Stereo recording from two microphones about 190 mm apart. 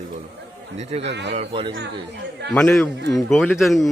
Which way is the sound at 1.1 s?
65° right (ahead or behind).